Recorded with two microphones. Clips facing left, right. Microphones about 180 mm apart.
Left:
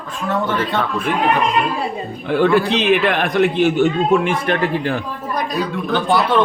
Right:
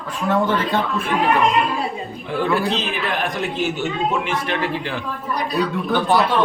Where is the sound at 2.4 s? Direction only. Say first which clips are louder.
Left 5 dB; 70° left (ahead or behind); by 5.0 s 50° left (ahead or behind).